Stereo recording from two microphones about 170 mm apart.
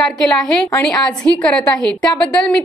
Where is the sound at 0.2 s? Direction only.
5° left (ahead or behind).